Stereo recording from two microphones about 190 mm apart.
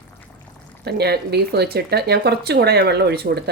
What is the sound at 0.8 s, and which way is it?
Speech, 60° right (ahead or behind).